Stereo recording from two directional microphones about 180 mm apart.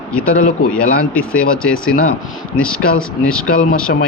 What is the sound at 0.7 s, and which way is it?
Speech, 5° left (ahead or behind).